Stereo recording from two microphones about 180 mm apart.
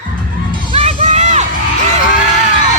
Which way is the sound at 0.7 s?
35° right (ahead or behind).